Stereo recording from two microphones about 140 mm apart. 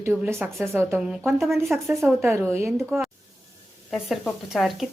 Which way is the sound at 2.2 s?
20° right (ahead or behind).